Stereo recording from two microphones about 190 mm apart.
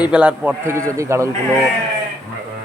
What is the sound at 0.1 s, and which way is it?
Speech, 5° right (ahead or behind).